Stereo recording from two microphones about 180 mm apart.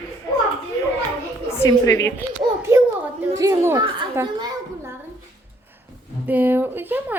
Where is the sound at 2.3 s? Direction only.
15° right (ahead or behind).